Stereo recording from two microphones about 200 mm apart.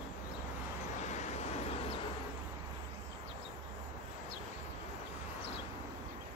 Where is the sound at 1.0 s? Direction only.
35° left (ahead or behind).